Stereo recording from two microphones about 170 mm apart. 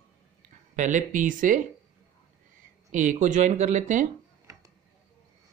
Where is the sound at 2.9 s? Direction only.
45° right (ahead or behind).